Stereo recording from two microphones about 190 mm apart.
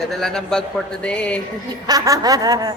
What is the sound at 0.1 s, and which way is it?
A man's voice, centre (ahead or behind).